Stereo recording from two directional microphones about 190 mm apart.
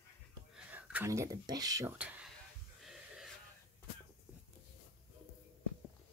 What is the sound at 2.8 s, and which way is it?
Gasp, centre (ahead or behind).